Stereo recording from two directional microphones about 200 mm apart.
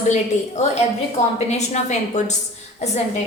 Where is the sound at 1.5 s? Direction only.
35° left (ahead or behind).